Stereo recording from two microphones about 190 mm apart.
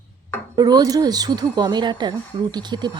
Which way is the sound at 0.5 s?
20° right (ahead or behind).